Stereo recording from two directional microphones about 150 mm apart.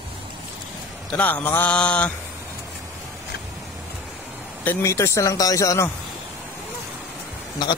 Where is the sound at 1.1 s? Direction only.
10° left (ahead or behind).